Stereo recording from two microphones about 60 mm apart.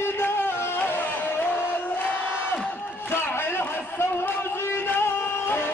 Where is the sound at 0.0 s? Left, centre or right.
Left.